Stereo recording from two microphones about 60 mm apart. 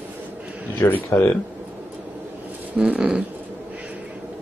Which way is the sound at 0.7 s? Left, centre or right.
Left.